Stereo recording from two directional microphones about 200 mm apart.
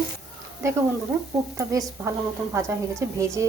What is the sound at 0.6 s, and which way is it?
Speech, 15° right (ahead or behind).